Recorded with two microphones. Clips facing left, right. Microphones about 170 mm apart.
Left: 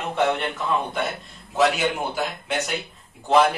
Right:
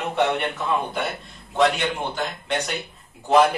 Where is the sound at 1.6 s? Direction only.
5° left (ahead or behind).